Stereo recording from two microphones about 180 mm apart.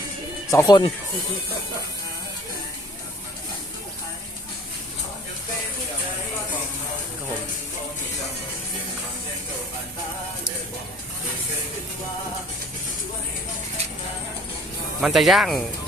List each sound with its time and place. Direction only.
0.5 s speech: 20° left (ahead or behind)
15.0 s speech: centre (ahead or behind)